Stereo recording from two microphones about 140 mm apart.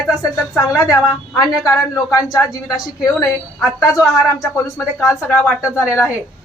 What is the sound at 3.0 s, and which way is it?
A woman's voice, 25° left (ahead or behind).